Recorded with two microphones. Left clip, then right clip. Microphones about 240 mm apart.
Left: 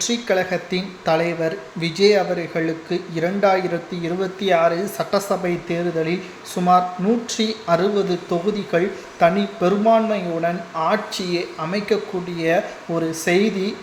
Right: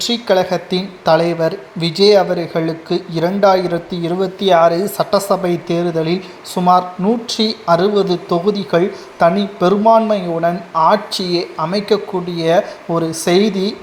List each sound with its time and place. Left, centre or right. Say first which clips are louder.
0.1 s a woman's voice: right 7 dB; centre